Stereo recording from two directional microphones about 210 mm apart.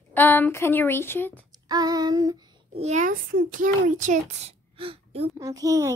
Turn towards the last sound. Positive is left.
turn(degrees=-15)  # may be behind; listen again after turning